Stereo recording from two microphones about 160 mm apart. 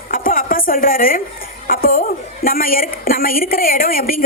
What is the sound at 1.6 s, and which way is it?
A woman's voice, 65° left (ahead or behind).